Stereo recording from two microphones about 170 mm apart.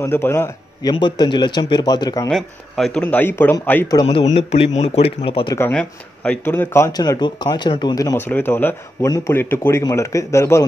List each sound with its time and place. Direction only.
0.0 s a man's voice: 15° left (ahead or behind)
0.8 s speech: 25° left (ahead or behind)
2.2 s speech: centre (ahead or behind)
3.9 s speech: 25° left (ahead or behind)
4.3 s speech: 35° left (ahead or behind)
5.6 s speech: 5° left (ahead or behind)
8.3 s a man's voice: 10° left (ahead or behind)